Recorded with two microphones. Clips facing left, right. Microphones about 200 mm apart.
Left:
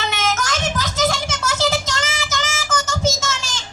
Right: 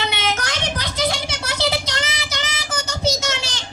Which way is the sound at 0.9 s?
45° left (ahead or behind).